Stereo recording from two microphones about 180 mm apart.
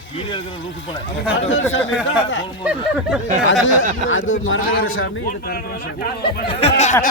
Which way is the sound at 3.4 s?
90° left.